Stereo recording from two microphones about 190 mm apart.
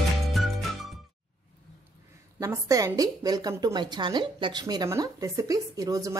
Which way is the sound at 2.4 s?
15° right (ahead or behind).